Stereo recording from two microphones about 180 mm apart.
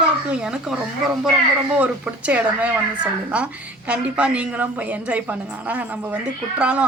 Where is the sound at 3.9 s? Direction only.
5° right (ahead or behind).